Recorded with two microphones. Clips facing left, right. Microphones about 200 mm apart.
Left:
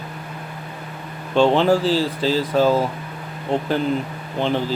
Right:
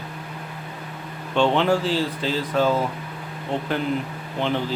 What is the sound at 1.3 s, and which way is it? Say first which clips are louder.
Speech: left 4 dB; 35° left (ahead or behind).